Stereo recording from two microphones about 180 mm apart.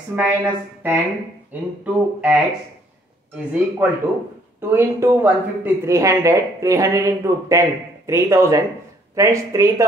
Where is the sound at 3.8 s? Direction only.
10° right (ahead or behind).